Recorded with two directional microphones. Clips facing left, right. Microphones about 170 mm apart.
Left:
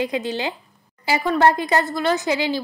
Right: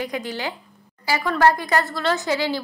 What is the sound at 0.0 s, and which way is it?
A woman's voice, 20° left (ahead or behind).